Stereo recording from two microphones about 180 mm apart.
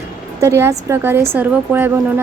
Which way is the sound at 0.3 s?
15° right (ahead or behind).